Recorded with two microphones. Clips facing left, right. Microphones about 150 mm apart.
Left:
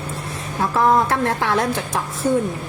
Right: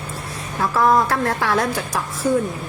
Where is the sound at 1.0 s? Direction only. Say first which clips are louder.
Even; 25° left (ahead or behind).